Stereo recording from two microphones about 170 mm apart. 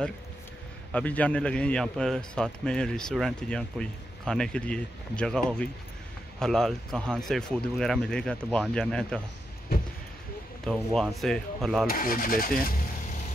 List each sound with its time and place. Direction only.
0.9 s a man's voice: 10° left (ahead or behind)
6.4 s a man's voice: centre (ahead or behind)
11.0 s a man's voice: 5° left (ahead or behind)
11.9 s speech: 55° left (ahead or behind)